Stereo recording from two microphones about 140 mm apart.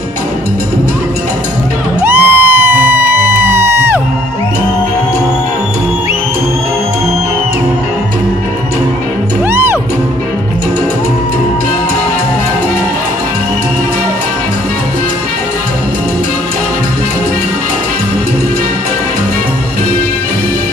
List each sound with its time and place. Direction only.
2.0 s music: 15° right (ahead or behind)
9.5 s music: 15° right (ahead or behind)